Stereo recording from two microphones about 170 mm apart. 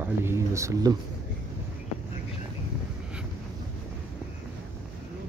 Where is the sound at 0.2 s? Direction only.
15° right (ahead or behind).